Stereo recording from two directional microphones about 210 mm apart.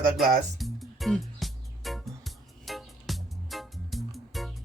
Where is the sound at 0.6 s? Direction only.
Centre (ahead or behind).